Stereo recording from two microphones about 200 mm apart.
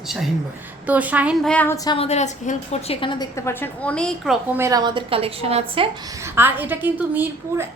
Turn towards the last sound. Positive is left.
turn(degrees=-10)  # may be behind; listen again after turning